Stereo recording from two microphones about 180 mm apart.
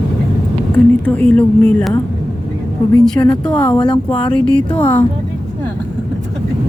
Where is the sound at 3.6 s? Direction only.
25° left (ahead or behind).